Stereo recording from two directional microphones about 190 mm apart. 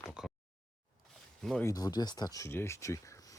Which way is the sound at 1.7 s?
20° left (ahead or behind).